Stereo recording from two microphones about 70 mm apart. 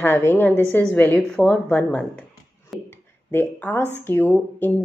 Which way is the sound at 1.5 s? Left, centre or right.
Left.